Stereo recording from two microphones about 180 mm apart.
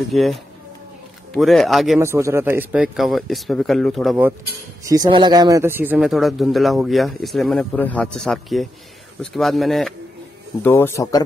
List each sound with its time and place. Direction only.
0.1 s a man's voice: centre (ahead or behind)
2.0 s a man's voice: 15° right (ahead or behind); by 4.2 s centre (ahead or behind)
4.8 s a man's voice: 20° right (ahead or behind); by 9.9 s centre (ahead or behind)
10.6 s speech: 10° left (ahead or behind)